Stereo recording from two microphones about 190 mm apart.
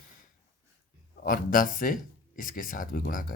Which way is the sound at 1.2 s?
50° left (ahead or behind).